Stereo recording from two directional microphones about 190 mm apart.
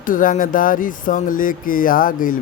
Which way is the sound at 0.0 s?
45° left (ahead or behind).